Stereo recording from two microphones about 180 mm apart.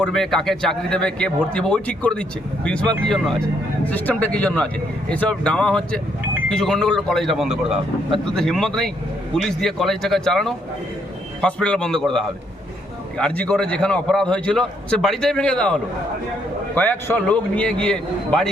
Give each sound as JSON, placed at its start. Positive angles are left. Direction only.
{"t": 0.0, "sound": "a man's voice", "side_deg": 5}
{"t": 13.1, "sound": "a man's voice", "side_deg": 5}